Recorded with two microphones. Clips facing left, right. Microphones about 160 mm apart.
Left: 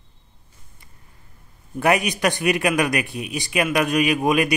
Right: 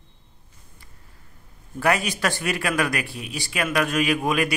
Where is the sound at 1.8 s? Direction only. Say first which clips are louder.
Left 3 dB; 20° left (ahead or behind).